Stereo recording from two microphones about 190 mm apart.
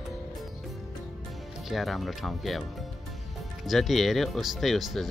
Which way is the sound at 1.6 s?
Centre (ahead or behind).